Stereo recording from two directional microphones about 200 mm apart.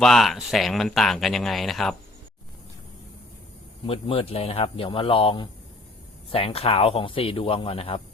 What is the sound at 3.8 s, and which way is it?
Speech, 30° left (ahead or behind).